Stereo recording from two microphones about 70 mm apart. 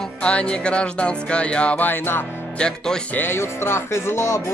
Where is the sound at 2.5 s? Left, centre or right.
Centre.